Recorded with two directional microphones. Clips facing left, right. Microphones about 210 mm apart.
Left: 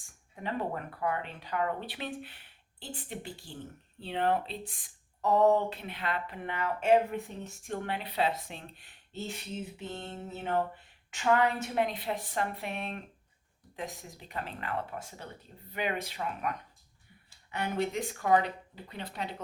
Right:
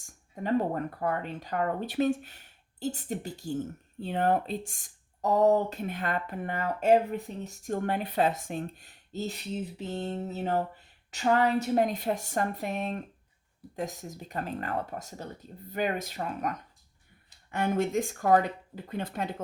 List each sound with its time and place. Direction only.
0.0 s a woman's voice: 45° right (ahead or behind)